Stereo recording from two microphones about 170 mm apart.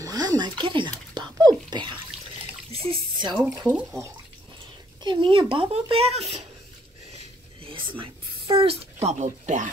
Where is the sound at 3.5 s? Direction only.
10° right (ahead or behind).